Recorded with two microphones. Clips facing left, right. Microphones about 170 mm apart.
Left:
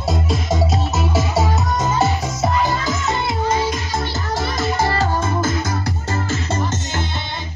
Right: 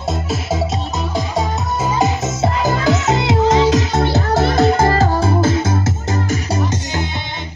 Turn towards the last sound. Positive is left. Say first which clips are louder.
# right 3 dB
turn(degrees=-15)  # may be behind; listen again after turning